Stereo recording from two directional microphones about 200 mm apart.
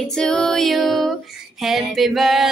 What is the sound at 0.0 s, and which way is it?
Female singing, 5° left (ahead or behind).